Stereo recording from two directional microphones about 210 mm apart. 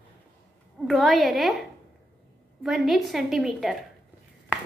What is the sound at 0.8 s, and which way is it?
Speech, centre (ahead or behind).